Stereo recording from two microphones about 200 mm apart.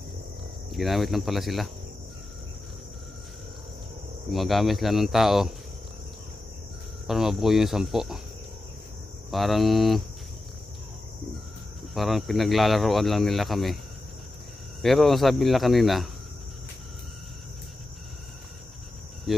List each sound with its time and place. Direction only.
0.7 s speech: centre (ahead or behind)
4.3 s speech: centre (ahead or behind)
7.1 s speech: centre (ahead or behind)
9.3 s speech: centre (ahead or behind)
11.9 s speech: centre (ahead or behind)
14.8 s speech: centre (ahead or behind)
19.3 s cricket: centre (ahead or behind)